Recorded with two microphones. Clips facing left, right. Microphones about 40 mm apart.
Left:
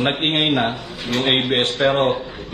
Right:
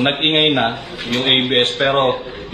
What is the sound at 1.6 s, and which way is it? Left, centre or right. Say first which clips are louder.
Speech: right 1 dB; right.